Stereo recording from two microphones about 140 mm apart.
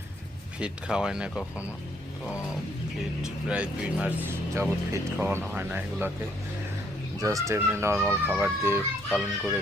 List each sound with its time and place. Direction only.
0.6 s speech: 5° right (ahead or behind)
3.2 s speech: 5° right (ahead or behind)
7.2 s speech: 25° right (ahead or behind)
9.0 s speech: centre (ahead or behind)